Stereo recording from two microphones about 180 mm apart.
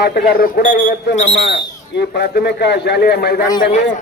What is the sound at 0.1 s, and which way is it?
Speech, 55° left (ahead or behind).